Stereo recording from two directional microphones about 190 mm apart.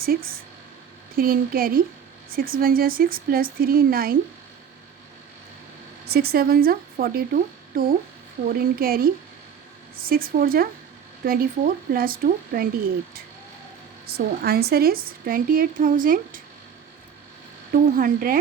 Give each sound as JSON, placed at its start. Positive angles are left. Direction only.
{"t": 0.0, "sound": "a woman's voice", "side_deg": -50}
{"t": 6.1, "sound": "a woman's voice", "side_deg": -55}
{"t": 17.7, "sound": "a woman's voice", "side_deg": -50}